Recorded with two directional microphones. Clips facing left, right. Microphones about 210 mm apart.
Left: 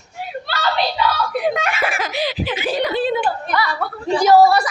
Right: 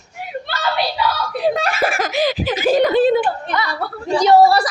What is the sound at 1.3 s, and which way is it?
Giggle, 30° right (ahead or behind).